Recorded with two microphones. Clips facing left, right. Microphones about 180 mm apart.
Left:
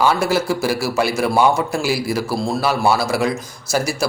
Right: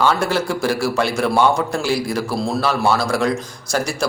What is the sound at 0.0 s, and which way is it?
A man's voice, 10° left (ahead or behind).